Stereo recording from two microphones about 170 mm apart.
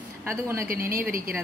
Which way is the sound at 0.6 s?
60° right (ahead or behind).